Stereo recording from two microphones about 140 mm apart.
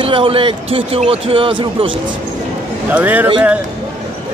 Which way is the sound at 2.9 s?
10° right (ahead or behind).